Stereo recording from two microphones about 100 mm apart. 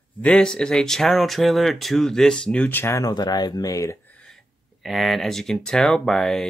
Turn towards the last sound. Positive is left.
turn(degrees=5)  # may be behind; listen again after turning